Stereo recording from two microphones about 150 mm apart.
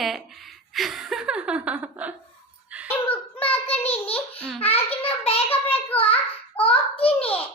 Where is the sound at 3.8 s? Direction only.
40° left (ahead or behind).